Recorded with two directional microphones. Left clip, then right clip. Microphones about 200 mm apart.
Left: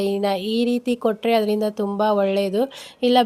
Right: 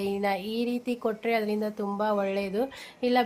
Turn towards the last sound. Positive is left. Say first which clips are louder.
# left 8 dB
turn(degrees=35)  # may be behind; listen again after turning